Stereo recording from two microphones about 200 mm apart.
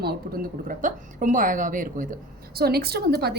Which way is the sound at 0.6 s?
40° right (ahead or behind).